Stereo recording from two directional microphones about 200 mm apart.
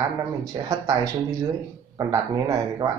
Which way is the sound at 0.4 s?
20° right (ahead or behind).